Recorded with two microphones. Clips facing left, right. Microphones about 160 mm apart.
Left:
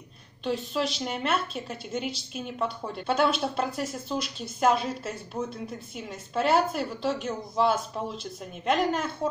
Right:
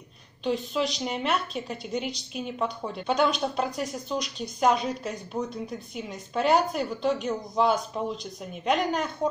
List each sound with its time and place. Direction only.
0.4 s a woman's voice: centre (ahead or behind)